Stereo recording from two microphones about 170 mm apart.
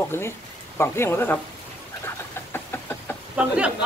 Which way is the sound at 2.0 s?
15° left (ahead or behind).